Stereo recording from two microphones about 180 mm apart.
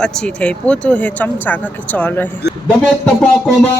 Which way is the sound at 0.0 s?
5° left (ahead or behind).